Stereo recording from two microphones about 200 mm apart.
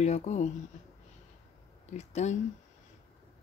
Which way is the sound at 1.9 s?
35° left (ahead or behind).